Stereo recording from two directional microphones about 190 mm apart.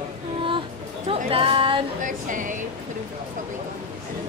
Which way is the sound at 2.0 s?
45° right (ahead or behind).